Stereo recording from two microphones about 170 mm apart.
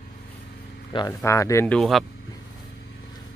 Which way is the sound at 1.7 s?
Centre (ahead or behind).